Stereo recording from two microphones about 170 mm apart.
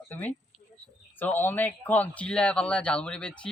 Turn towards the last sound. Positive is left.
turn(degrees=5)  # may be behind; listen again after turning